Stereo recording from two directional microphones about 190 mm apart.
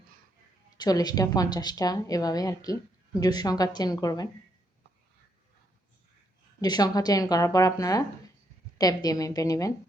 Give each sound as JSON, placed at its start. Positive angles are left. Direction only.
{"t": 0.8, "sound": "a woman's voice", "side_deg": 20}
{"t": 6.6, "sound": "a woman's voice", "side_deg": 20}